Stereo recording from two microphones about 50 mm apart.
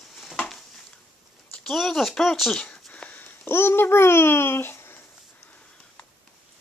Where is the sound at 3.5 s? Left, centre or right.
Left.